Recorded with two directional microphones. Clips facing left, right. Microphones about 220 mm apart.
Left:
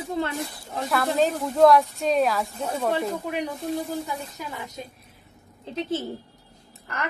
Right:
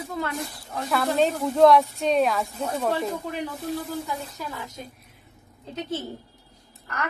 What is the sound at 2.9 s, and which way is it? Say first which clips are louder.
Child singing: left 1 dB; 15° left (ahead or behind).